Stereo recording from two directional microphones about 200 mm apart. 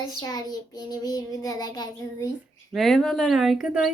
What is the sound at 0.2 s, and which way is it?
Child singing, 20° left (ahead or behind).